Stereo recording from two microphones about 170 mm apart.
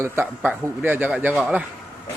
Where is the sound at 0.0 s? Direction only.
15° right (ahead or behind).